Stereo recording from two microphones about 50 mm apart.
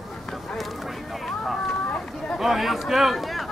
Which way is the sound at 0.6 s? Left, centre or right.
Centre.